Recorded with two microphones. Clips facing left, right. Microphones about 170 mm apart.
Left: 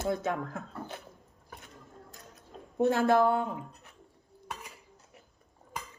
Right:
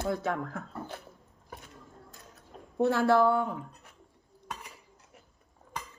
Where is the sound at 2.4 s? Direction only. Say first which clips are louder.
Even; 20° left (ahead or behind).